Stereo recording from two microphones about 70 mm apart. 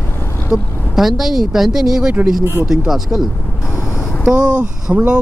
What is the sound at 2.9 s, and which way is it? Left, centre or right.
Speech, centre.